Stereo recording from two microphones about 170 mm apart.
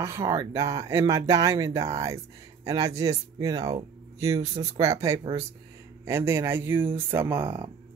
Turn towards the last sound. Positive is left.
turn(degrees=-10)  # may be behind; listen again after turning